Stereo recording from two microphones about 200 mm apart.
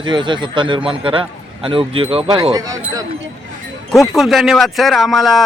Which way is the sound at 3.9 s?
Centre (ahead or behind).